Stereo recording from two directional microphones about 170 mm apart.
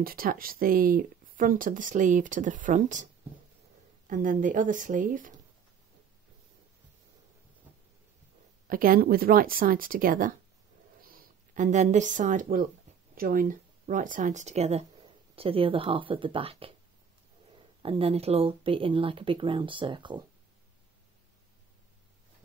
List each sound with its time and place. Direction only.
0.0 s speech: 60° right (ahead or behind)
4.1 s speech: 50° right (ahead or behind)
8.6 s speech: 55° right (ahead or behind); by 16.7 s 35° right (ahead or behind)
17.8 s speech: 35° right (ahead or behind)